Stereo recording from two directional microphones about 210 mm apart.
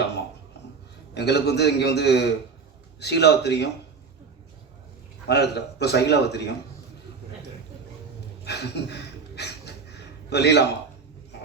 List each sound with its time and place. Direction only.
1.1 s a man's voice: 55° left (ahead or behind)
5.3 s a man's voice: 50° left (ahead or behind)
8.4 s a sound: 55° left (ahead or behind)
10.2 s a man's voice: 50° left (ahead or behind)